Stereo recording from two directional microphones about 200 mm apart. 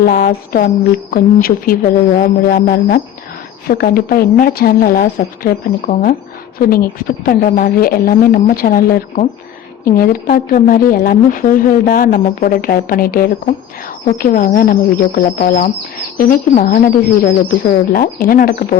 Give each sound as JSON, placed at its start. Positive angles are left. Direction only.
{"t": 0.0, "sound": "a woman's voice", "side_deg": 45}